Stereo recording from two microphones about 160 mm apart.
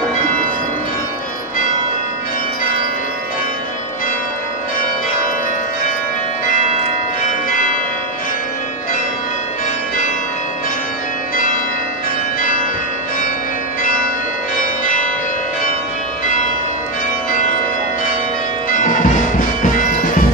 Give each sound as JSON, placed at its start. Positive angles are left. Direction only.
{"t": 11.3, "sound": "change ringing", "side_deg": 55}
{"t": 14.6, "sound": "church bell", "side_deg": 55}
{"t": 18.7, "sound": "music", "side_deg": 55}